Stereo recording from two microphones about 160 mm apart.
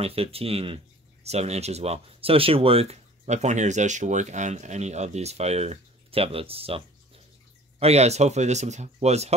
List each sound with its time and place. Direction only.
0.0 s speech: 35° right (ahead or behind)
7.8 s speech: 40° right (ahead or behind)